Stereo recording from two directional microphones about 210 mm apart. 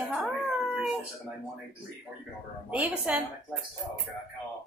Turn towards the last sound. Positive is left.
turn(degrees=-5)  # may be behind; listen again after turning